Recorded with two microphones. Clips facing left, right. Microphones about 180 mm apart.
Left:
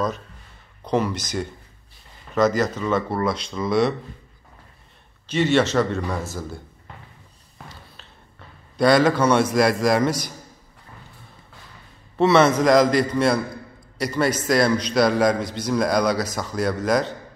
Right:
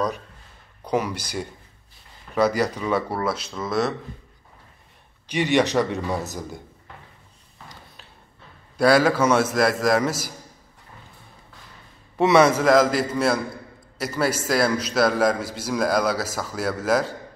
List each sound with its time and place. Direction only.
0.8 s speech: 10° right (ahead or behind)
5.2 s speech: 15° right (ahead or behind)
8.7 s a man's voice: 5° right (ahead or behind)
12.4 s a man's voice: 5° right (ahead or behind)